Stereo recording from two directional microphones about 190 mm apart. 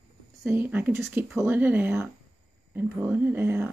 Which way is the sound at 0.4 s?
10° right (ahead or behind).